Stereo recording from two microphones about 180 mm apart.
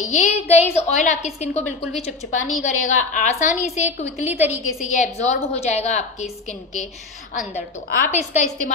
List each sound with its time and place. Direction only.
0.0 s a woman's voice: 40° left (ahead or behind)
4.3 s a woman's voice: 10° right (ahead or behind)
4.8 s a woman's voice: 40° left (ahead or behind)
7.9 s a woman's voice: 45° left (ahead or behind)